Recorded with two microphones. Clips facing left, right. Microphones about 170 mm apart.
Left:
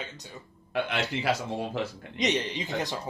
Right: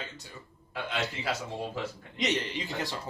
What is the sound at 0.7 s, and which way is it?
Speech, 70° left (ahead or behind).